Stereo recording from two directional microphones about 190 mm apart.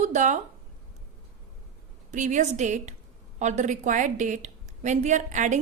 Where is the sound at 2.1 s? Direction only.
40° right (ahead or behind).